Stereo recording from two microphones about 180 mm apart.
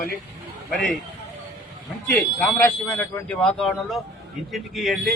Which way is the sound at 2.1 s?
10° left (ahead or behind).